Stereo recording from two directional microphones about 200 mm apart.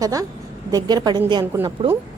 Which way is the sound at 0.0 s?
15° right (ahead or behind).